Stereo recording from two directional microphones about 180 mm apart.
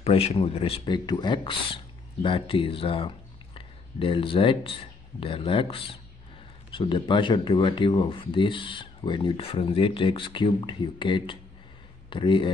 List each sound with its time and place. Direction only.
0.0 s speech: 35° left (ahead or behind)